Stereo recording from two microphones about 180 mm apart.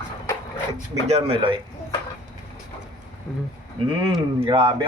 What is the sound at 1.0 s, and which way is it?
Speech, 35° right (ahead or behind).